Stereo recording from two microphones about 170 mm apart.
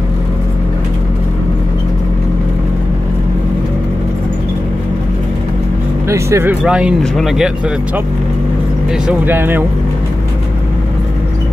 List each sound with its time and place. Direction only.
6.0 s speech: 15° right (ahead or behind)
6.6 s speech: 5° right (ahead or behind)
9.0 s speech: 10° right (ahead or behind)